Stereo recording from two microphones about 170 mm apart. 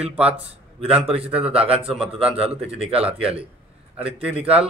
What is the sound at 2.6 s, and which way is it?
A man's voice, 5° right (ahead or behind).